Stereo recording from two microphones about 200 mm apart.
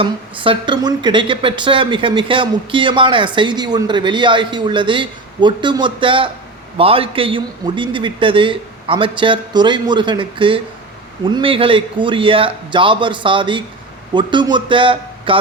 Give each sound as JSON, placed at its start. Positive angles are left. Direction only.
{"t": 0.0, "sound": "speech", "side_deg": -25}